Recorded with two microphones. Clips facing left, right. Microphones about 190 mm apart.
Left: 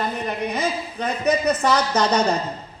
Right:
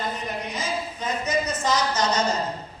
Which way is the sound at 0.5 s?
65° left (ahead or behind).